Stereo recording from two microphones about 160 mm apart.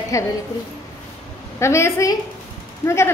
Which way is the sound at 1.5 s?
15° left (ahead or behind).